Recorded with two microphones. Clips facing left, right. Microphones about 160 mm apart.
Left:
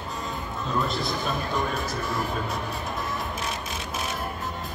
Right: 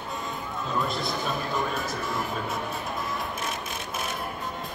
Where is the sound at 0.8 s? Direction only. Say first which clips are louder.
Left 1 dB; centre (ahead or behind).